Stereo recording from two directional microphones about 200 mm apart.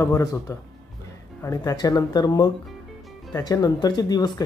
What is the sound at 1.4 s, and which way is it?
Speech, 15° left (ahead or behind).